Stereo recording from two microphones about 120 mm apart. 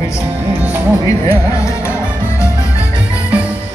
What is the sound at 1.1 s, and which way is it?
Speech, 25° left (ahead or behind).